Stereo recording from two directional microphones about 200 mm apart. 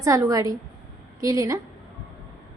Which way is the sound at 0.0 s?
15° right (ahead or behind).